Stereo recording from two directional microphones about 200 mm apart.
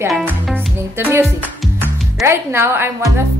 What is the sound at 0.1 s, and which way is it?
Music, centre (ahead or behind).